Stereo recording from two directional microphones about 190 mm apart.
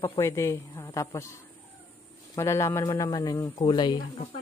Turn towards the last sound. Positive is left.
turn(degrees=20)  # may be behind; listen again after turning